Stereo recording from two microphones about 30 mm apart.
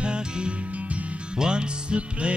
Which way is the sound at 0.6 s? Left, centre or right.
Right.